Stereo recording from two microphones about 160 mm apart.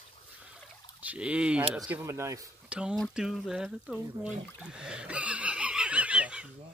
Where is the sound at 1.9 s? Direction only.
15° right (ahead or behind).